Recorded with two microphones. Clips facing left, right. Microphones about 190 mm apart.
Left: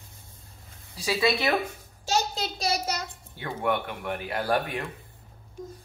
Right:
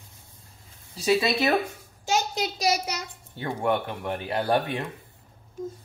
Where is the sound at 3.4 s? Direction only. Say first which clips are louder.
Right 2 dB; 30° right (ahead or behind).